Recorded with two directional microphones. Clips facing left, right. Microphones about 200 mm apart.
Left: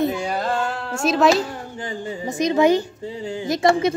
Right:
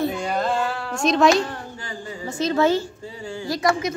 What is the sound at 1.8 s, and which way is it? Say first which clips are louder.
A woman's voice: left 5 dB; 20° left (ahead or behind).